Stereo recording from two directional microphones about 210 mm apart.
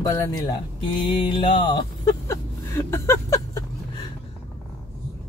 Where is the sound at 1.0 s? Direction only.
25° left (ahead or behind).